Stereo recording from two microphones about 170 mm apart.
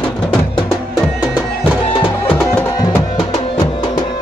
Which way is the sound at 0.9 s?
5° right (ahead or behind).